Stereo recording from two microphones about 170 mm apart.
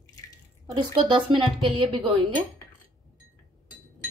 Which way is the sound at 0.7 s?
30° right (ahead or behind).